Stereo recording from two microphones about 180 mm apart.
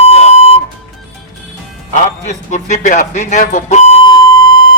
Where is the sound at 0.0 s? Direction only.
35° left (ahead or behind).